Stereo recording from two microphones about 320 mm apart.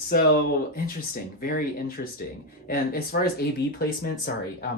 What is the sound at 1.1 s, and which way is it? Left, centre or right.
Speech, left.